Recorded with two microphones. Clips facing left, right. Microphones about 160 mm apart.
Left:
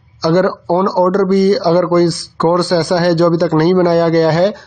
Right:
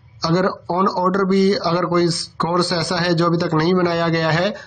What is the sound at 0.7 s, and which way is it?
A man's voice, 45° left (ahead or behind).